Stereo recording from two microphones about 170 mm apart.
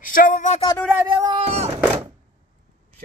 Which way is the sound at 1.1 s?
30° right (ahead or behind).